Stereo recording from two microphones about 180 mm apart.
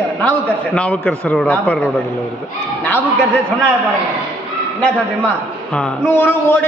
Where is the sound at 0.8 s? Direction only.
5° left (ahead or behind).